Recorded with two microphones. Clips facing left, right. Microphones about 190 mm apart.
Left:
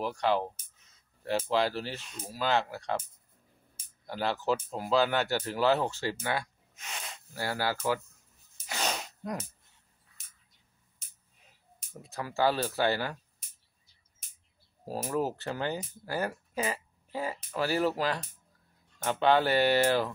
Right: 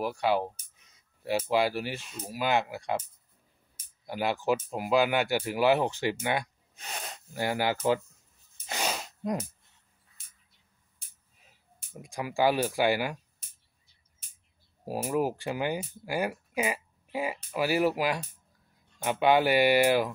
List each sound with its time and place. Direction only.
0.0 s speech: 10° right (ahead or behind)
4.0 s speech: 10° right (ahead or behind)
6.7 s sneeze: 35° right (ahead or behind)
7.3 s speech: 20° right (ahead or behind)
8.6 s sneeze: 15° right (ahead or behind)
9.2 s speech: 20° right (ahead or behind)
11.9 s speech: 15° right (ahead or behind)
14.9 s speech: 10° right (ahead or behind)